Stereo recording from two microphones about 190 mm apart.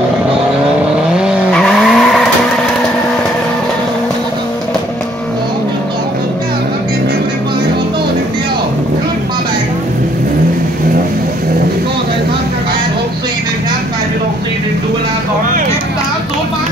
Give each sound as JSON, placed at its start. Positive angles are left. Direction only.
{"t": 1.1, "sound": "vehicle", "side_deg": 0}